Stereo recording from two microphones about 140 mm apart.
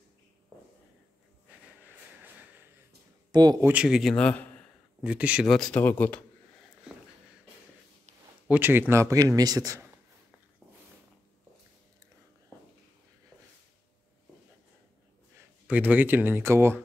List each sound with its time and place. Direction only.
3.3 s a sound: 30° right (ahead or behind)
3.6 s speech: 5° right (ahead or behind)
4.1 s speech: 10° left (ahead or behind)
5.0 s speech: 10° right (ahead or behind)
5.5 s speech: 5° left (ahead or behind)
6.9 s a sound: 5° right (ahead or behind)
8.5 s speech: 15° right (ahead or behind)
15.6 s speech: 10° right (ahead or behind)